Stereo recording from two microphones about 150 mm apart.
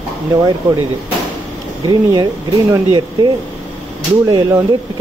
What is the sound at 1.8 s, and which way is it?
Speech, 25° right (ahead or behind).